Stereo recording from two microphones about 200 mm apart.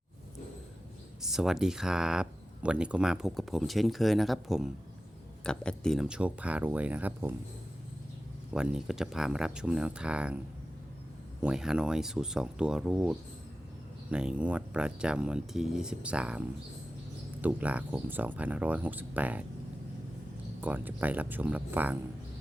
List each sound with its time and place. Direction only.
1.2 s speech: centre (ahead or behind)
8.5 s speech: 5° right (ahead or behind)
11.4 s speech: 5° right (ahead or behind)
17.4 s speech: 5° right (ahead or behind)
20.6 s speech: 10° right (ahead or behind)